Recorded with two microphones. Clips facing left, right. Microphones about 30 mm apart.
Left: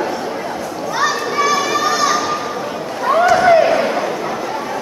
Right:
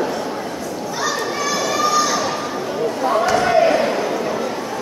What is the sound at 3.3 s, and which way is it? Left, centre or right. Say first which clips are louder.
Slam: left 4 dB; centre.